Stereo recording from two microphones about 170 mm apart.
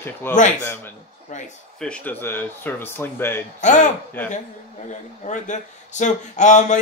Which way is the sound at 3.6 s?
45° left (ahead or behind).